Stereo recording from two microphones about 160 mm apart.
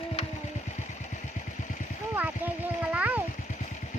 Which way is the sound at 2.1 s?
10° right (ahead or behind).